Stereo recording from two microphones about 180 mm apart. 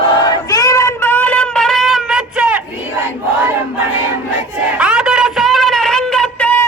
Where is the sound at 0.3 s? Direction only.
20° left (ahead or behind); by 2.6 s 5° right (ahead or behind).